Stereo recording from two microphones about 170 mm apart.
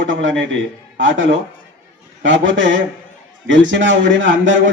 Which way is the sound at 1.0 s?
90° right.